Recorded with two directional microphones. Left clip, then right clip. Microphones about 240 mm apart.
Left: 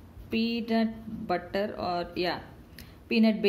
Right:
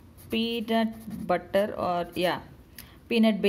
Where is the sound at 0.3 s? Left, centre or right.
Right.